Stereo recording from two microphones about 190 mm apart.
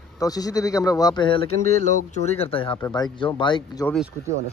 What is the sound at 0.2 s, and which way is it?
Speech, 20° left (ahead or behind).